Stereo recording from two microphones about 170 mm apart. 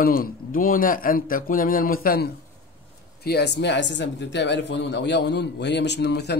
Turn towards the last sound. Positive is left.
turn(degrees=80)